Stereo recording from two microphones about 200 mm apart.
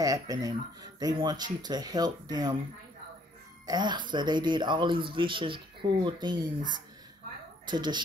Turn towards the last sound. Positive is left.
turn(degrees=-20)  # may be behind; listen again after turning